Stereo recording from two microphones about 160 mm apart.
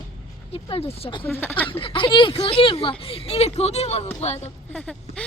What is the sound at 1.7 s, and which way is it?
Speech, 35° left (ahead or behind).